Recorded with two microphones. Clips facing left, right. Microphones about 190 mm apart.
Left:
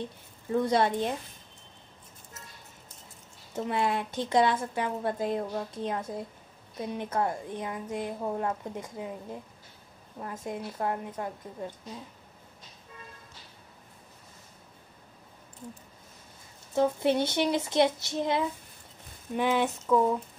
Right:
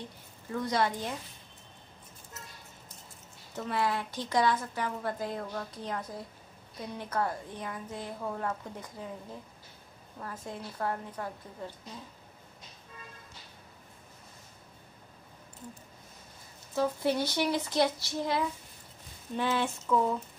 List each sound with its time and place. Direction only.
0.5 s a woman's voice: 25° left (ahead or behind)
3.5 s a woman's voice: 20° left (ahead or behind)
16.7 s a woman's voice: 25° left (ahead or behind)
19.3 s a sound: 15° left (ahead or behind)